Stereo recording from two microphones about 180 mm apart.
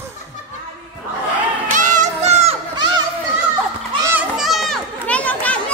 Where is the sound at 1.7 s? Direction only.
45° right (ahead or behind).